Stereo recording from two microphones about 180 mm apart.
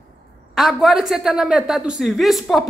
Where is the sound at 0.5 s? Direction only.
Centre (ahead or behind).